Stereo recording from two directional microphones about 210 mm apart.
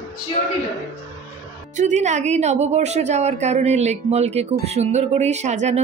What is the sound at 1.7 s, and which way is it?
A woman's voice, 35° right (ahead or behind).